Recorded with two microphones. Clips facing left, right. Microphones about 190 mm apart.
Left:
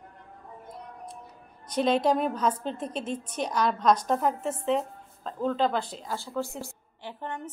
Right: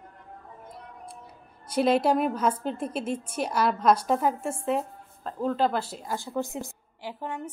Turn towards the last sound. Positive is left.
turn(degrees=-10)  # may be behind; listen again after turning